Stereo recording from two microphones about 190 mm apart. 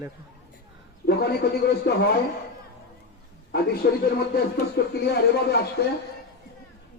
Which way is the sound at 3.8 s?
55° left (ahead or behind).